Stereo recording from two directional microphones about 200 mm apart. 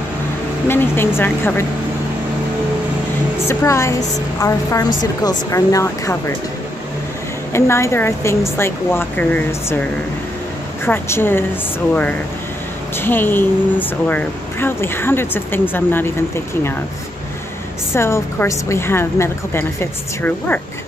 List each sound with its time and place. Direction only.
0.7 s speech: 10° left (ahead or behind)
3.4 s speech: 15° left (ahead or behind)
7.5 s speech: 15° left (ahead or behind)
10.9 s speech: 10° left (ahead or behind)
17.9 s speech: 15° left (ahead or behind)